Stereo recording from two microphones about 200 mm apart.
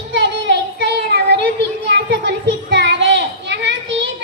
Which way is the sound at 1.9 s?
60° right (ahead or behind).